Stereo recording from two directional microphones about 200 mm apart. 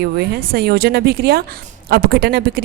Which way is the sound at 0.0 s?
50° right (ahead or behind).